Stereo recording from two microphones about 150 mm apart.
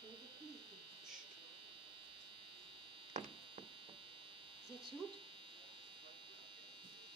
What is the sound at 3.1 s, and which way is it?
Hum, 55° right (ahead or behind).